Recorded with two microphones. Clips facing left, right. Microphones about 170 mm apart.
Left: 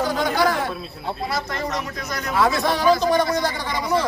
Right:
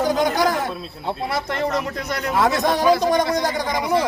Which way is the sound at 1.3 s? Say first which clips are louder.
Right 4 dB; 60° right (ahead or behind).